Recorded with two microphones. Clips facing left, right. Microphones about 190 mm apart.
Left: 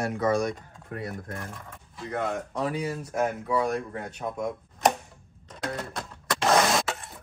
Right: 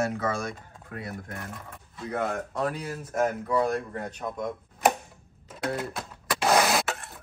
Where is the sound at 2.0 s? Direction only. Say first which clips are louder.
Even; centre (ahead or behind).